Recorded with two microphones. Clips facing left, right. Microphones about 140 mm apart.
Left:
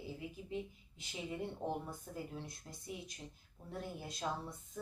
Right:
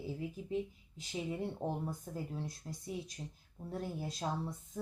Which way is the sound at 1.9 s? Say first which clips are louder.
Right 3 dB; 35° right (ahead or behind).